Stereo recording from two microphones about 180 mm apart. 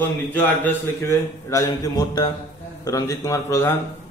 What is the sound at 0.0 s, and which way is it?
A man's voice, 10° left (ahead or behind).